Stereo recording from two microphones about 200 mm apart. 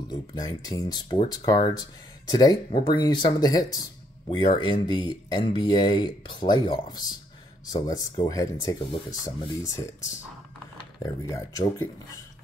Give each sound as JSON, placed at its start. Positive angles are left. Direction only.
{"t": 0.1, "sound": "speech", "side_deg": 20}
{"t": 11.0, "sound": "speech", "side_deg": 15}